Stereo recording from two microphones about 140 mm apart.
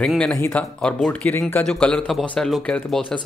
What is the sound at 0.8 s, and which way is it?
Speech, 10° left (ahead or behind).